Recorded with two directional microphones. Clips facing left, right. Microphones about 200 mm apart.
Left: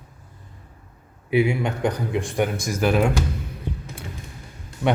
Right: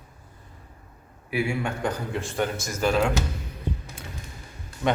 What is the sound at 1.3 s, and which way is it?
Speech, 20° left (ahead or behind).